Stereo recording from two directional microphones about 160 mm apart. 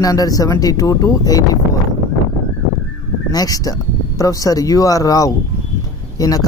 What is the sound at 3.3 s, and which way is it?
Speech, 25° left (ahead or behind).